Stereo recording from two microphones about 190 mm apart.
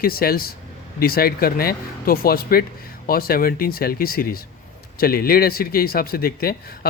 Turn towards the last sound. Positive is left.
turn(degrees=50)  # may be behind; listen again after turning